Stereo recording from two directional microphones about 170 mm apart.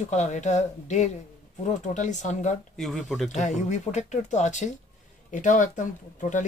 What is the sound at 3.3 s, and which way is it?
Speech, 45° left (ahead or behind).